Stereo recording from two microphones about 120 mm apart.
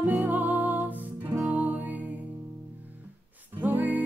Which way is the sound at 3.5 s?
15° right (ahead or behind).